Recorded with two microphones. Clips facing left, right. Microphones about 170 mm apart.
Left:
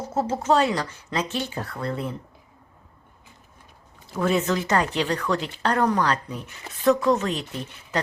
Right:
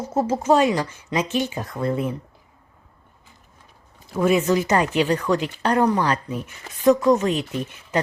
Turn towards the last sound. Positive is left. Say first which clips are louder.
# right 4 dB
turn(degrees=-20)  # may be behind; listen again after turning